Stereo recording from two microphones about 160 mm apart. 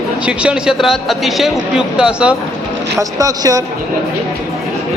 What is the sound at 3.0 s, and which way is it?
Speech, 20° right (ahead or behind).